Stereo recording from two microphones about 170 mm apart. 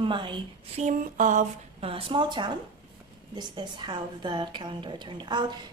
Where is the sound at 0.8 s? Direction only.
50° right (ahead or behind).